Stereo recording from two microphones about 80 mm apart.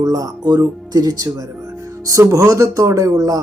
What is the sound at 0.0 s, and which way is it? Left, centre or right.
Speech, right.